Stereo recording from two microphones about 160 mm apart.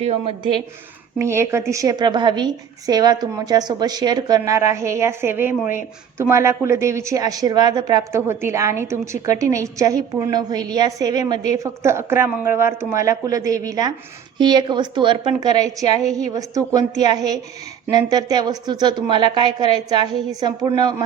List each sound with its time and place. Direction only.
0.0 s speech: 40° right (ahead or behind)
1.2 s speech: 15° right (ahead or behind)